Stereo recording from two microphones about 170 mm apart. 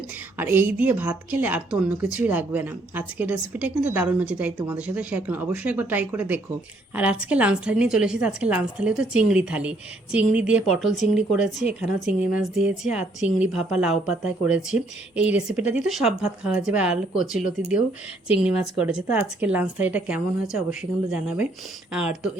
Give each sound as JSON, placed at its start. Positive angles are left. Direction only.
{"t": 0.3, "sound": "a woman's voice", "side_deg": -10}
{"t": 11.6, "sound": "a woman's voice", "side_deg": 40}
{"t": 12.2, "sound": "speech", "side_deg": -5}
{"t": 18.4, "sound": "a woman's voice", "side_deg": -5}